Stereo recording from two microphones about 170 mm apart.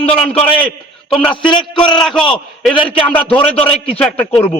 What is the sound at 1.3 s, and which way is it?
Speech, 30° left (ahead or behind).